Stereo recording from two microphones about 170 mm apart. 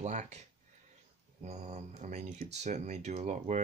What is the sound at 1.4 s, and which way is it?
Speech, 40° right (ahead or behind).